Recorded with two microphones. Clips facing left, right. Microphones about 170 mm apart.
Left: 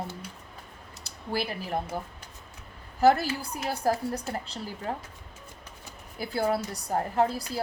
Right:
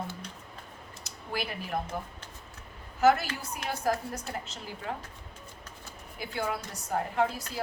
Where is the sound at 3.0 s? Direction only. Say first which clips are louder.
Left 2 dB; 35° left (ahead or behind).